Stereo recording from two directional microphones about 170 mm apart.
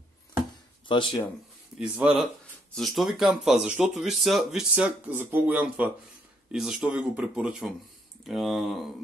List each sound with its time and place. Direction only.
0.8 s speech: 30° left (ahead or behind)
1.8 s speech: 5° right (ahead or behind)